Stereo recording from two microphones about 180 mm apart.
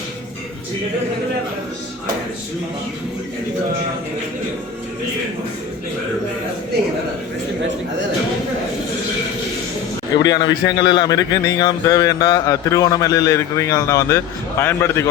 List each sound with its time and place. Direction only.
10.2 s a man's voice: 20° left (ahead or behind)